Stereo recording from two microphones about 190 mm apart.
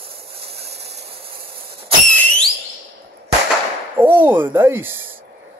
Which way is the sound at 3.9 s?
10° right (ahead or behind).